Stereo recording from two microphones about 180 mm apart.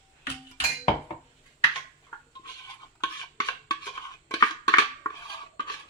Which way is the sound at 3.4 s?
20° left (ahead or behind).